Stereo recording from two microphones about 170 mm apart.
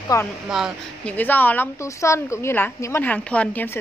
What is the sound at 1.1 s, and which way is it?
A woman's voice, 10° left (ahead or behind).